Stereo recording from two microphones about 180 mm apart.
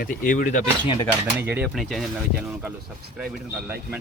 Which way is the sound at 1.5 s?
10° right (ahead or behind).